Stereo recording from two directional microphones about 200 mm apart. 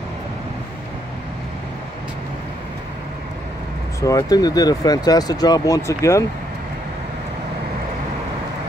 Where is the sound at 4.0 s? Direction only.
15° left (ahead or behind).